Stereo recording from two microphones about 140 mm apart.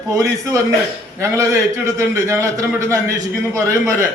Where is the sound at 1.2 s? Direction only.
20° right (ahead or behind).